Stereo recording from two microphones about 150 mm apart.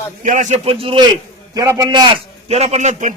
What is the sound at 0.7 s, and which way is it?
Speech, 35° right (ahead or behind).